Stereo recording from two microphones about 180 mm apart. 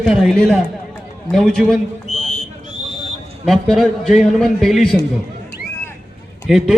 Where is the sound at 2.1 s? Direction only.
35° left (ahead or behind).